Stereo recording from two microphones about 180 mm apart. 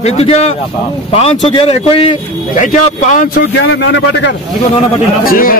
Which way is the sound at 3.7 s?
75° left (ahead or behind).